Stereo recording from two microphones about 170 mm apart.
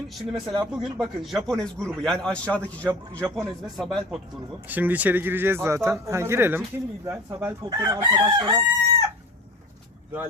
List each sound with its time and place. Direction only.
0.2 s a man's voice: centre (ahead or behind)
4.7 s speech: 10° right (ahead or behind)
7.0 s chicken: 15° right (ahead or behind)